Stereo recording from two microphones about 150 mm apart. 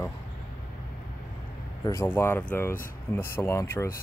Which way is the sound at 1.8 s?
20° left (ahead or behind).